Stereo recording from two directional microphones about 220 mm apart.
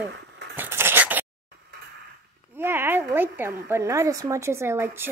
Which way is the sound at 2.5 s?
10° right (ahead or behind).